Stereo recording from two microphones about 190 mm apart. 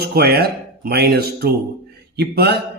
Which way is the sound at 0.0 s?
55° right (ahead or behind).